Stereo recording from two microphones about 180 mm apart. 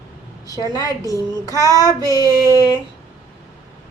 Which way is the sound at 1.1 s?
20° right (ahead or behind).